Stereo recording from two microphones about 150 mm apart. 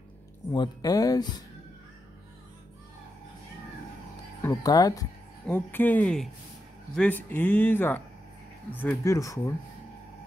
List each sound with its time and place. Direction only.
0.5 s speech: 25° left (ahead or behind)
4.4 s speech: 25° left (ahead or behind)
5.5 s speech: 15° left (ahead or behind)